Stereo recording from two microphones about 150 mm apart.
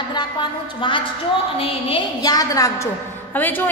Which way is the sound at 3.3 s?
10° left (ahead or behind).